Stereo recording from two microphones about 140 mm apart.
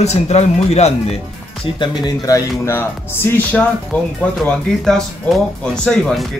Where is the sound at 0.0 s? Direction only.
50° left (ahead or behind).